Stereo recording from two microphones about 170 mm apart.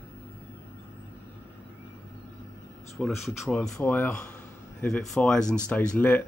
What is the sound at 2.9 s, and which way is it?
Speech, centre (ahead or behind).